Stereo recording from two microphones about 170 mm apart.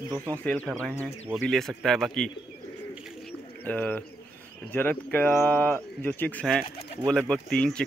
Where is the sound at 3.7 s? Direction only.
10° left (ahead or behind).